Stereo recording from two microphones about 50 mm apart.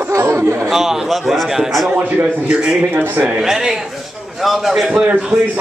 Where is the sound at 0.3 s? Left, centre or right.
Right.